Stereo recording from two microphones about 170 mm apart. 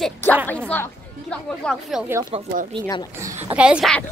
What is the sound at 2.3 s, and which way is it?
Speech, 35° right (ahead or behind).